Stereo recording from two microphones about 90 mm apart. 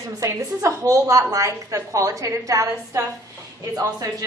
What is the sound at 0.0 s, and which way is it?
A woman's voice, 35° right (ahead or behind).